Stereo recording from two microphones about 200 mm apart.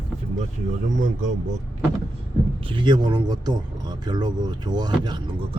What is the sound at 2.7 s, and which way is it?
Speech, 25° right (ahead or behind).